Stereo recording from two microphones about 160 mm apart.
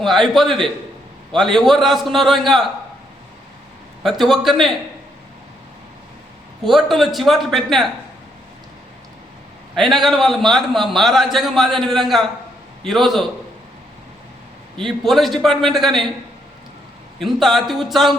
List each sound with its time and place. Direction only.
0.0 s a man's voice: centre (ahead or behind)
4.0 s a man's voice: centre (ahead or behind)
6.7 s a man's voice: centre (ahead or behind)
9.7 s a man's voice: centre (ahead or behind)
14.8 s a man's voice: centre (ahead or behind)
17.2 s a man's voice: centre (ahead or behind)